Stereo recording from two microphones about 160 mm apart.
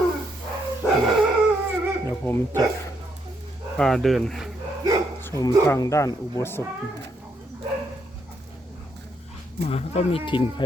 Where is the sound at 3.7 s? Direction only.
5° left (ahead or behind).